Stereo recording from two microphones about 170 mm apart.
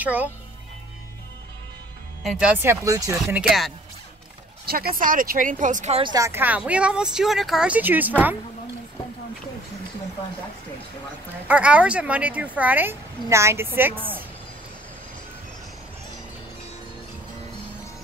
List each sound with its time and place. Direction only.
0.0 s speech: 10° right (ahead or behind)
2.6 s speech: 15° right (ahead or behind)
3.3 s speech: 5° right (ahead or behind)
4.6 s speech: 60° right (ahead or behind); by 6.0 s 45° right (ahead or behind)
6.0 s speech: 20° right (ahead or behind)
11.4 s speech: 10° right (ahead or behind)